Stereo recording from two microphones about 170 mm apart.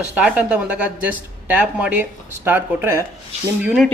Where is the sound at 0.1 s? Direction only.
5° right (ahead or behind).